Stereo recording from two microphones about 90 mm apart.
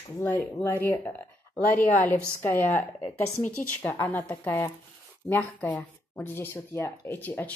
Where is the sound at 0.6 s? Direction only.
20° left (ahead or behind).